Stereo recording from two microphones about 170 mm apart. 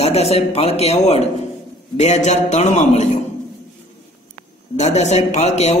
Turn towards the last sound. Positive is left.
turn(degrees=40)  # may be behind; listen again after turning